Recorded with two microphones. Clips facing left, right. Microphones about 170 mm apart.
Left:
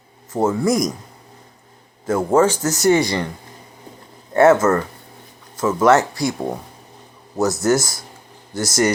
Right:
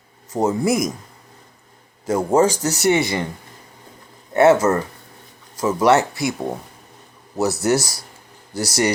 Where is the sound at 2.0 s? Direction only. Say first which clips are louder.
Left 1 dB; 20° right (ahead or behind).